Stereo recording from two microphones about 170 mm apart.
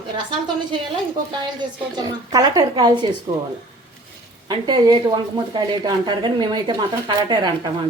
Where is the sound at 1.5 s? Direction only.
25° right (ahead or behind).